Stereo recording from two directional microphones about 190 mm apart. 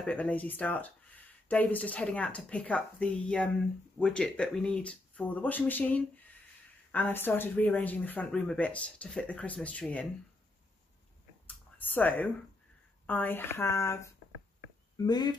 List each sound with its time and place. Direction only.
0.0 s speech: 5° left (ahead or behind)
11.4 s a sound: 10° left (ahead or behind)
13.0 s speech: 10° left (ahead or behind)